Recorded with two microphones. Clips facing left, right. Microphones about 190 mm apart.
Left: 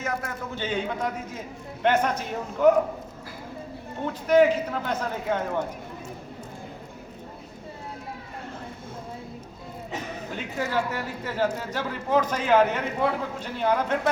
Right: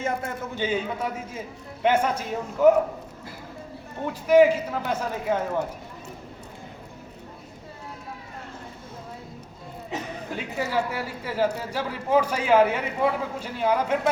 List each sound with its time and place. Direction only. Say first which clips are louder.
0.0 s a man's voice: right 2 dB; 25° right (ahead or behind)
0.5 s a man's voice: right 1 dB; 10° right (ahead or behind)
4.0 s a man's voice: right 2 dB; 10° right (ahead or behind)
10.3 s a man's voice: right 1 dB; 10° right (ahead or behind)